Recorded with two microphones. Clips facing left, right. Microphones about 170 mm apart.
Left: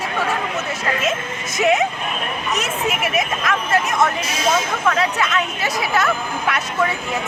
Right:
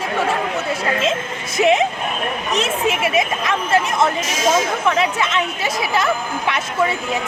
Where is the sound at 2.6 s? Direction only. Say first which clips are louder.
Right 5 dB; 30° right (ahead or behind).